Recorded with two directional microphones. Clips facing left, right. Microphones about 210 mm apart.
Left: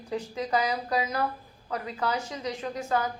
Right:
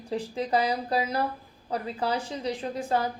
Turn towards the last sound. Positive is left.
turn(degrees=-30)  # may be behind; listen again after turning